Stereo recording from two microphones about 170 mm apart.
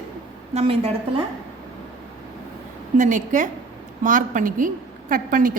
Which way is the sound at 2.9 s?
45° right (ahead or behind).